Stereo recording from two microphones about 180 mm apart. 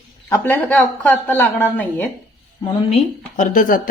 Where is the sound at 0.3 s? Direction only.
15° left (ahead or behind).